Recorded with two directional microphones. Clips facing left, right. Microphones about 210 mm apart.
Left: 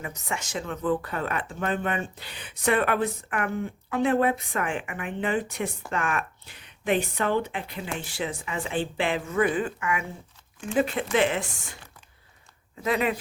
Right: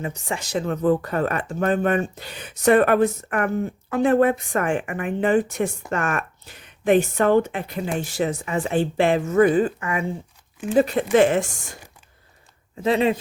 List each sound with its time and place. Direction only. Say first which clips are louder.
0.0 s speech: right 5 dB; 30° right (ahead or behind)
12.8 s speech: right 6 dB; 30° right (ahead or behind)